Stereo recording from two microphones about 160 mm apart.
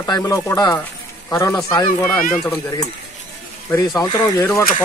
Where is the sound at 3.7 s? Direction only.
20° left (ahead or behind).